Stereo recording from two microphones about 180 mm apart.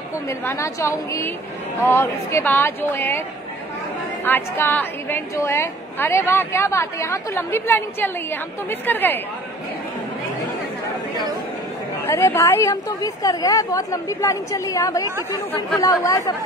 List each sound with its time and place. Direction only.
0.3 s a woman's voice: 15° left (ahead or behind)
12.0 s a woman's voice: 10° left (ahead or behind)